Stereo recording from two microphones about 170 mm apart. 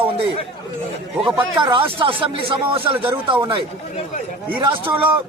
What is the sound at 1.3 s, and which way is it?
A man's voice, 30° right (ahead or behind).